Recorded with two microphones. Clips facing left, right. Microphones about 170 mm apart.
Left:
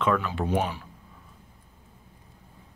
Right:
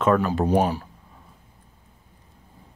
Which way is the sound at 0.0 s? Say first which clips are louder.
Right 6 dB; 45° right (ahead or behind).